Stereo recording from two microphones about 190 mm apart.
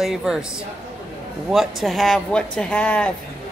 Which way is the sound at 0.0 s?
Centre (ahead or behind).